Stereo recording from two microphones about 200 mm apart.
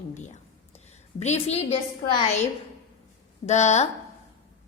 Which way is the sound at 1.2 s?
35° left (ahead or behind).